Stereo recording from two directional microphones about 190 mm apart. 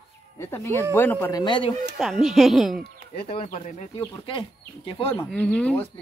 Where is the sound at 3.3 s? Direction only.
40° left (ahead or behind).